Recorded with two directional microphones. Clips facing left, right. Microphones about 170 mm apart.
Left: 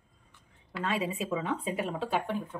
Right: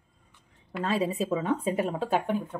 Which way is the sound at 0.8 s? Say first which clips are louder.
Right 4 dB; 35° right (ahead or behind).